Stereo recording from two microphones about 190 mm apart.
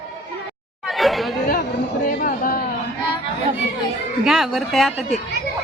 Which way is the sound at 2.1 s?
45° left (ahead or behind).